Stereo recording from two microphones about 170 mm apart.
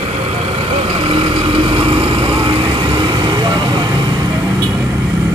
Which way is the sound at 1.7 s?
30° right (ahead or behind).